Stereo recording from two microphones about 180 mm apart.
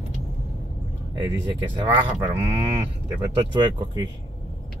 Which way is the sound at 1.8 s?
25° right (ahead or behind).